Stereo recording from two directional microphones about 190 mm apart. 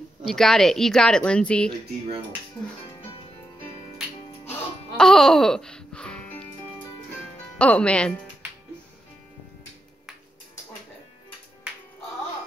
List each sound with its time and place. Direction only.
0.2 s speech: centre (ahead or behind)
4.5 s music: 5° left (ahead or behind)
7.5 s speech: 5° left (ahead or behind)